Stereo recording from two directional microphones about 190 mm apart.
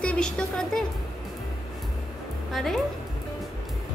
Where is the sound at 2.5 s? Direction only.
Centre (ahead or behind).